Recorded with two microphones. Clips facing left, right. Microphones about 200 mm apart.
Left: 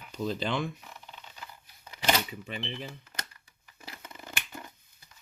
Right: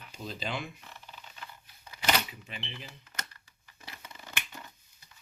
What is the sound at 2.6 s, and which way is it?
Speech, 50° left (ahead or behind).